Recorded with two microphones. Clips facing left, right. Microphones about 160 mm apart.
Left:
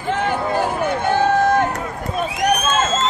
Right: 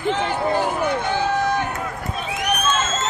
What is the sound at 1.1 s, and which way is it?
Run, 50° left (ahead or behind).